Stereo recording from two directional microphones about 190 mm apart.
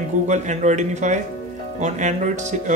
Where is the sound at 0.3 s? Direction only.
40° right (ahead or behind).